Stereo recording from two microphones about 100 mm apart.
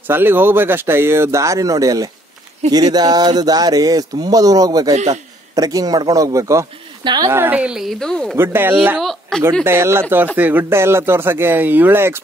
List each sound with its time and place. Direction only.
0.1 s speech: 20° right (ahead or behind)
7.2 s speech: 20° right (ahead or behind); by 8.4 s 5° left (ahead or behind)
8.4 s speech: 20° right (ahead or behind)
8.9 s speech: 5° left (ahead or behind)
9.7 s speech: 25° right (ahead or behind)